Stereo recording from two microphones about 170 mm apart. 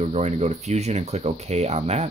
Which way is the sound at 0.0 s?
40° right (ahead or behind).